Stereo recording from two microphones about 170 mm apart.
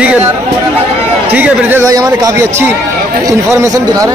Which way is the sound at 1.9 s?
20° right (ahead or behind).